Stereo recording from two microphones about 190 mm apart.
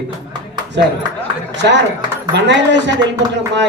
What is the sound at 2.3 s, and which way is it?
Speech, 70° right (ahead or behind).